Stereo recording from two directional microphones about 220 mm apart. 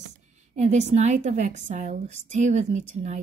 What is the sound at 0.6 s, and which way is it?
A woman's voice, 30° right (ahead or behind).